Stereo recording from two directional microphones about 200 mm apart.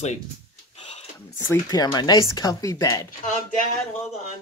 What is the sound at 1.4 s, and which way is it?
Speech, 20° left (ahead or behind).